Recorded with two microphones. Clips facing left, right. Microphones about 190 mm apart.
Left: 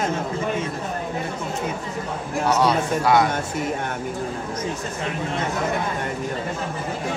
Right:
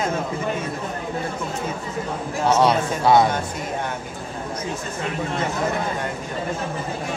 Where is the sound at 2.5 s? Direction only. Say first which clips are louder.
Right 2 dB; 25° right (ahead or behind).